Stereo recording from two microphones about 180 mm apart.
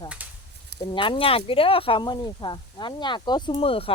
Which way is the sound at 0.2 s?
10° right (ahead or behind).